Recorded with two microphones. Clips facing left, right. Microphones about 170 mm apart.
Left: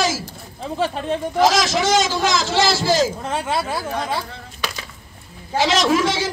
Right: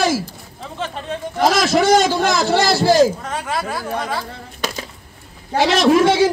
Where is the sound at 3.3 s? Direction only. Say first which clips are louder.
Left 1 dB; 25° left (ahead or behind).